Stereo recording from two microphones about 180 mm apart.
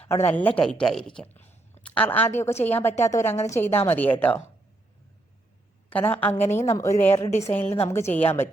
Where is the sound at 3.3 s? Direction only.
40° left (ahead or behind).